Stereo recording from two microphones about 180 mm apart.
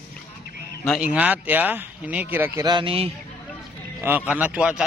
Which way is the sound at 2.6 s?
25° right (ahead or behind).